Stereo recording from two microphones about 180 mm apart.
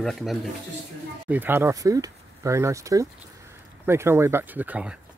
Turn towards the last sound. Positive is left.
turn(degrees=-10)  # may be behind; listen again after turning